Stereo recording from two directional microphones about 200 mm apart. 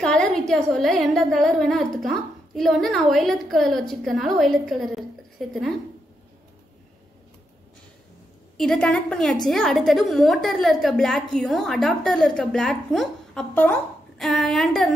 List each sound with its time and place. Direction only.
0.0 s a woman's voice: 5° left (ahead or behind)
8.5 s a woman's voice: centre (ahead or behind)